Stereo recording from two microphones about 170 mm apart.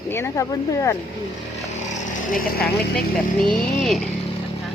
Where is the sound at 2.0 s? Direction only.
50° left (ahead or behind).